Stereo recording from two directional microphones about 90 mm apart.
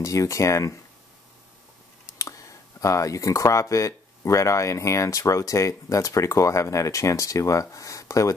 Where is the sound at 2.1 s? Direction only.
35° left (ahead or behind).